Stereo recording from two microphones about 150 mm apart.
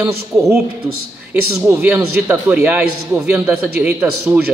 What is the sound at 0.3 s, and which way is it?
Speech, 10° right (ahead or behind).